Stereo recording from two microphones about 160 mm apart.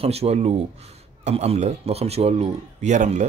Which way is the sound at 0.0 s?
40° right (ahead or behind).